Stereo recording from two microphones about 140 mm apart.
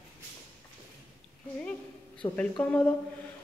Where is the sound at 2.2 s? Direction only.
20° left (ahead or behind).